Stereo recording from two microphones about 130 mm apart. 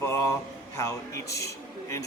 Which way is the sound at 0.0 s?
20° left (ahead or behind).